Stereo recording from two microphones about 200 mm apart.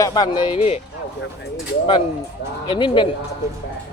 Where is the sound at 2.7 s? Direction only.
25° left (ahead or behind).